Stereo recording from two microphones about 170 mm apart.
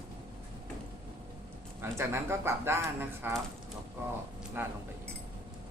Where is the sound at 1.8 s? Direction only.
15° right (ahead or behind).